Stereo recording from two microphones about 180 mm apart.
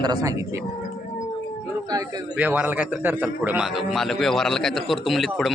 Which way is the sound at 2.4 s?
10° right (ahead or behind).